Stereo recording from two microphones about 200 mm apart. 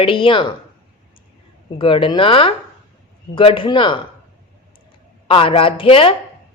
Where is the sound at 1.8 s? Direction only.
25° left (ahead or behind).